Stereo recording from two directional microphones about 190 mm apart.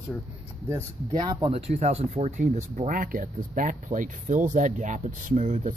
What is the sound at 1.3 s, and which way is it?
Speech, 30° right (ahead or behind).